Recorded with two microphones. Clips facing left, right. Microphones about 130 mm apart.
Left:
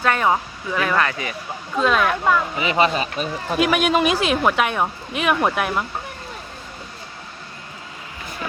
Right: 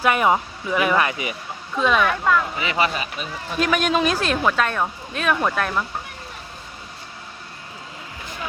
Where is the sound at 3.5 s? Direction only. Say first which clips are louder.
Left 2 dB; 5° left (ahead or behind).